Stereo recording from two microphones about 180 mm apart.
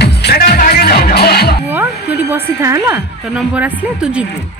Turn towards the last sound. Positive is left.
turn(degrees=-5)  # may be behind; listen again after turning